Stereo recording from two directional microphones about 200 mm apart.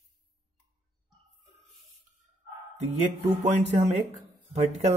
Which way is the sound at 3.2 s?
35° right (ahead or behind).